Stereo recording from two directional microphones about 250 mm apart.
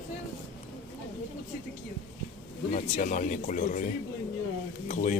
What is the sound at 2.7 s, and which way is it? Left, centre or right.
Speech, left.